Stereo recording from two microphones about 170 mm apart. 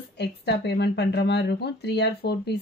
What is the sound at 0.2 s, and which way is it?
Speech, 75° left (ahead or behind).